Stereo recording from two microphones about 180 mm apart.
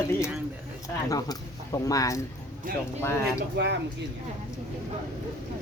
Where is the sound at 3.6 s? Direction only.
65° right (ahead or behind).